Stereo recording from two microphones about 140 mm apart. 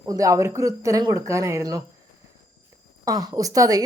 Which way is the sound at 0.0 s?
25° right (ahead or behind).